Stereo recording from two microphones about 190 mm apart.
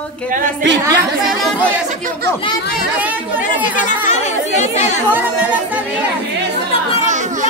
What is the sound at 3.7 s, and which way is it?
Speech, 40° left (ahead or behind).